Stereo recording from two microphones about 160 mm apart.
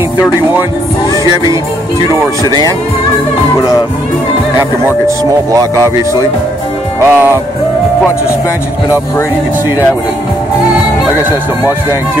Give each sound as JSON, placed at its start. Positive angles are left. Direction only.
{"t": 1.1, "sound": "music", "side_deg": -25}
{"t": 4.6, "sound": "speech", "side_deg": -15}